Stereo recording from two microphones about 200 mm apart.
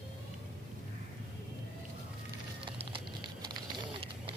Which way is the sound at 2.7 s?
25° right (ahead or behind).